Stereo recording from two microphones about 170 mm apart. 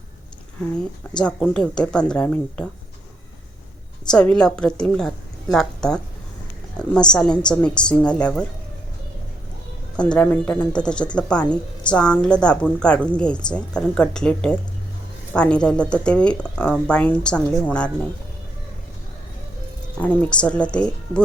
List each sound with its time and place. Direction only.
1.1 s speech: 5° left (ahead or behind)
4.1 s speech: 5° left (ahead or behind)
10.0 s speech: 5° left (ahead or behind)
20.0 s speech: 10° left (ahead or behind)